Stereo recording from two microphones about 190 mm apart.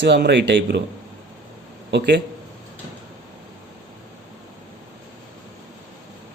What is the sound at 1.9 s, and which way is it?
Speech, 65° right (ahead or behind).